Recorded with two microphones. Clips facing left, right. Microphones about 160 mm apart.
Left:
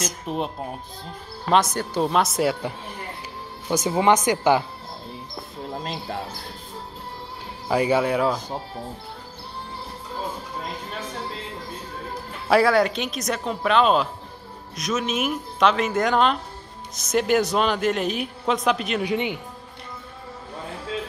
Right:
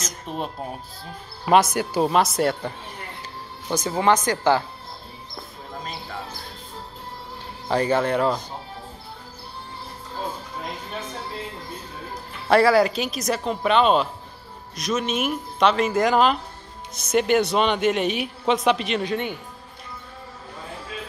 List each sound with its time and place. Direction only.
0.3 s speech: 5° left (ahead or behind)
1.4 s speech: 10° right (ahead or behind)
3.6 s speech: 15° left (ahead or behind)
7.6 s speech: 5° left (ahead or behind)
12.4 s speech: centre (ahead or behind)
19.0 s speech: 15° left (ahead or behind)